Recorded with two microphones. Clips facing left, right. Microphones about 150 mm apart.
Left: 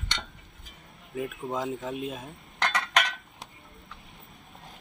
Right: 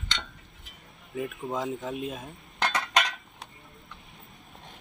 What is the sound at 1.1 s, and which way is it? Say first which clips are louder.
Cutlery: even; centre (ahead or behind).